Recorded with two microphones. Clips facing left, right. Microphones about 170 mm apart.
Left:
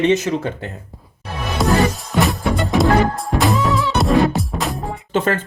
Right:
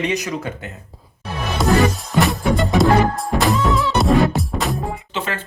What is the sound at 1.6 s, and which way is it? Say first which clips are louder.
Music: even; centre (ahead or behind).